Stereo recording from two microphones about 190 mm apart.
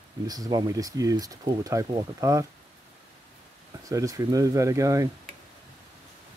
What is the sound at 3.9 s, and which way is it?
Speech, 15° right (ahead or behind).